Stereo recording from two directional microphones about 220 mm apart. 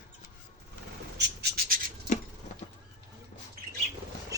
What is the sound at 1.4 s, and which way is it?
Rub, 40° right (ahead or behind).